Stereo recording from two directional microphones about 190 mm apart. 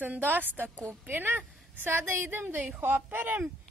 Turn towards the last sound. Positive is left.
turn(degrees=-10)  # may be behind; listen again after turning